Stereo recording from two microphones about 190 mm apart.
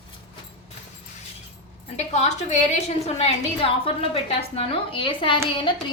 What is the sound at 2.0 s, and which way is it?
A woman's voice, 35° left (ahead or behind).